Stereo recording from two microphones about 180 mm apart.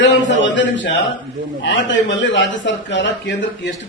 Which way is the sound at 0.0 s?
90° left.